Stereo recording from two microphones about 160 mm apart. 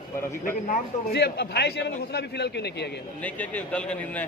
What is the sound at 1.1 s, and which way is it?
A man's voice, 90° left.